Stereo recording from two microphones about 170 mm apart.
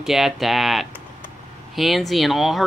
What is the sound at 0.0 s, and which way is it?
Speech, centre (ahead or behind).